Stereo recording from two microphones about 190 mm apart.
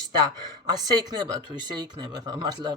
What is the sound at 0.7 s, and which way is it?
Speech, 20° right (ahead or behind).